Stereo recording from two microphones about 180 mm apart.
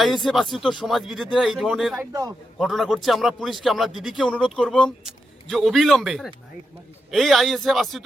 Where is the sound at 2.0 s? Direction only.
20° right (ahead or behind).